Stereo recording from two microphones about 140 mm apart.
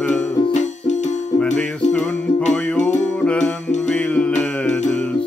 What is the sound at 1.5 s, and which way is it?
Music, 5° left (ahead or behind).